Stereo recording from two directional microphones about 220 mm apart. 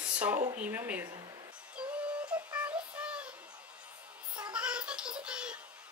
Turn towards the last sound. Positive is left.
turn(degrees=-5)  # may be behind; listen again after turning